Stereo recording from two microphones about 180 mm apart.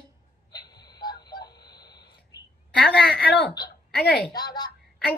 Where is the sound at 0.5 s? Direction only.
20° left (ahead or behind).